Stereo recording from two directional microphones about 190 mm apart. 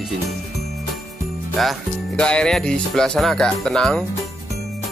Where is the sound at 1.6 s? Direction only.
Centre (ahead or behind).